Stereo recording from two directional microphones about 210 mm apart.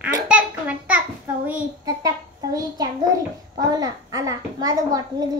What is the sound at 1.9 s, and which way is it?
A child's voice, 15° right (ahead or behind).